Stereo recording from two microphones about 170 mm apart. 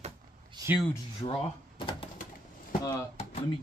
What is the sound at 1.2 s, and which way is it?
Speech, 30° left (ahead or behind).